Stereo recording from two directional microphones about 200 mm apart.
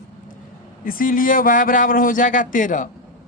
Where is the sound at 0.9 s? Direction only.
45° left (ahead or behind).